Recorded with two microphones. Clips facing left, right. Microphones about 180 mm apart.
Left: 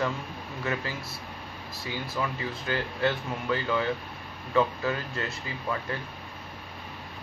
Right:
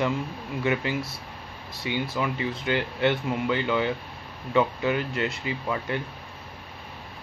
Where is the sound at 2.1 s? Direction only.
20° right (ahead or behind).